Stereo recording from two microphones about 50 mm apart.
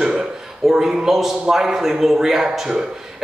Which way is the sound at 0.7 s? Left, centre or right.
Centre.